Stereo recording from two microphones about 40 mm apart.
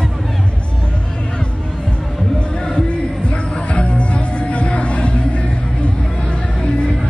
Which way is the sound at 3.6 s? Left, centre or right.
Left.